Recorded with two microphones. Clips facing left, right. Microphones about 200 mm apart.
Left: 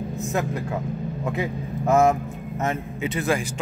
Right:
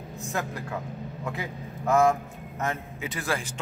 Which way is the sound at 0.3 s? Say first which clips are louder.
Left 4 dB; 20° left (ahead or behind).